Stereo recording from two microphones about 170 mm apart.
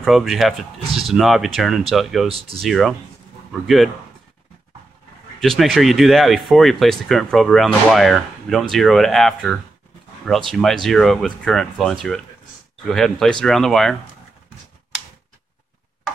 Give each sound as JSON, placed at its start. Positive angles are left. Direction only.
{"t": 0.0, "sound": "speech", "side_deg": 0}
{"t": 2.2, "sound": "speech", "side_deg": -35}
{"t": 2.6, "sound": "speech", "side_deg": 0}
{"t": 5.6, "sound": "speech", "side_deg": 0}